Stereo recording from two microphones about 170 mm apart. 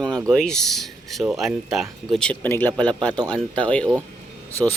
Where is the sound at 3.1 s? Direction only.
25° right (ahead or behind).